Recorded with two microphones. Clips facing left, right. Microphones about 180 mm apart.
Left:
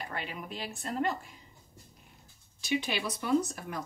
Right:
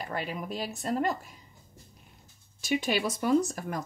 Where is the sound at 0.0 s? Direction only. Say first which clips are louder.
Right 5 dB; 40° right (ahead or behind).